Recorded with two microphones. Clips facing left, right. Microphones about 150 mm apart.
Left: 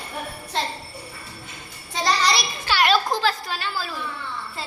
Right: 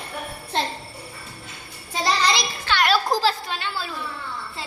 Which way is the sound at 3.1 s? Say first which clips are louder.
Right 2 dB; 30° right (ahead or behind).